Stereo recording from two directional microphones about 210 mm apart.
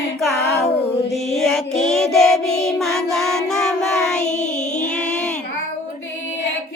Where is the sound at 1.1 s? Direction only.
Centre (ahead or behind).